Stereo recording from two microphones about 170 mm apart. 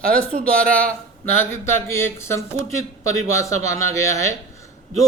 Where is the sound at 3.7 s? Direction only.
15° left (ahead or behind).